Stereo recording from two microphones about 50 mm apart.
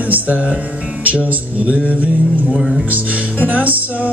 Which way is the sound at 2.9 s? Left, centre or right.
Right.